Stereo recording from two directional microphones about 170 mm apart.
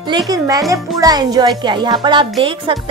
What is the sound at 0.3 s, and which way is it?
Speech, 20° right (ahead or behind).